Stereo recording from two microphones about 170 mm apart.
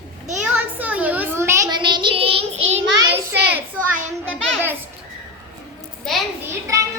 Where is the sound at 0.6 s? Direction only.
10° right (ahead or behind); by 2.6 s 35° right (ahead or behind).